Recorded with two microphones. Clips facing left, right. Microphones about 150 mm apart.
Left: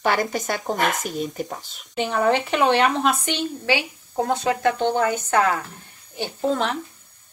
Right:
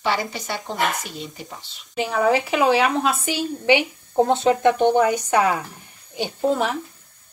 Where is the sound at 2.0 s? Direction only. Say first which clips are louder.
Right 1 dB; 5° right (ahead or behind).